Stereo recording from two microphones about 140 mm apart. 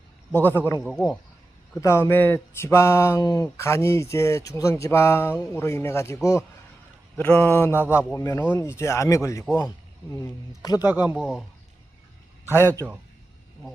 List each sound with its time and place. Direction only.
0.3 s mantra: 15° left (ahead or behind)
0.8 s speech: centre (ahead or behind)
1.8 s speech: 20° left (ahead or behind)
7.2 s mantra: 10° left (ahead or behind)
8.1 s speech: 25° left (ahead or behind)
10.9 s speech: 10° right (ahead or behind)
12.5 s mantra: 15° left (ahead or behind)